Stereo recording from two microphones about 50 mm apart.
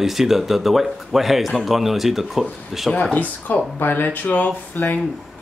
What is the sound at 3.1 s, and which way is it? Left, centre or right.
Speech, left.